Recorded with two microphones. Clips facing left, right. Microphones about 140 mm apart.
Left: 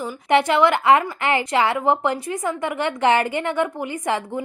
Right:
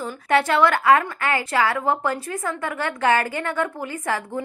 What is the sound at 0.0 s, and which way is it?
A woman's voice, 15° left (ahead or behind).